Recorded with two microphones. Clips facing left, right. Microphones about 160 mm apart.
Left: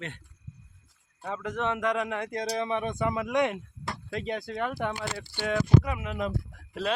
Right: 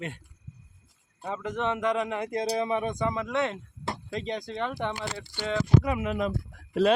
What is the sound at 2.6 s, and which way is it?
Speech, 5° right (ahead or behind).